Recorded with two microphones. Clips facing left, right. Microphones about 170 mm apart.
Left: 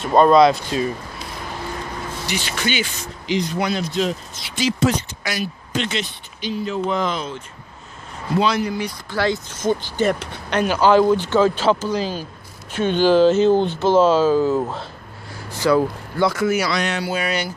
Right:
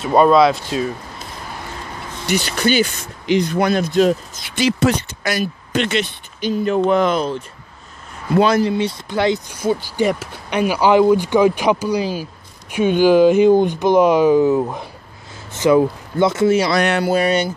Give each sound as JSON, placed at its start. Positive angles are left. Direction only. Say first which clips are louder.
{"t": 0.0, "sound": "speech", "louder": "right 1 dB", "side_deg": -5}
{"t": 2.2, "sound": "speech", "louder": "right 8 dB", "side_deg": -40}
{"t": 3.0, "sound": "speech", "louder": "right 5 dB", "side_deg": -55}
{"t": 8.4, "sound": "speech", "louder": "right 5 dB", "side_deg": -50}
{"t": 8.6, "sound": "speech", "louder": "right 6 dB", "side_deg": -25}
{"t": 16.7, "sound": "speech", "louder": "right 6 dB", "side_deg": -55}
{"t": 17.1, "sound": "speech", "louder": "right 7 dB", "side_deg": -30}